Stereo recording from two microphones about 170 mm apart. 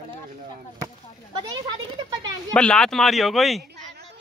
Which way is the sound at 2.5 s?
5° left (ahead or behind).